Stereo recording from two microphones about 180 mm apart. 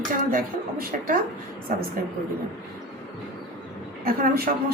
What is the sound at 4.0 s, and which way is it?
Speech, 55° right (ahead or behind).